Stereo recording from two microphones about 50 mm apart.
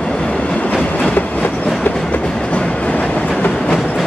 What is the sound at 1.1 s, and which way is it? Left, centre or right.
Train, left.